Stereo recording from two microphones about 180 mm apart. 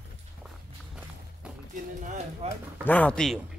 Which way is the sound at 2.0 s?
45° right (ahead or behind).